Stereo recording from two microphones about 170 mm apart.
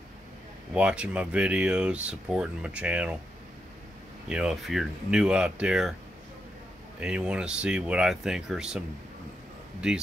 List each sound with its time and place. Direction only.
0.7 s speech: 5° right (ahead or behind)
4.3 s speech: 5° right (ahead or behind)
7.0 s speech: 5° right (ahead or behind)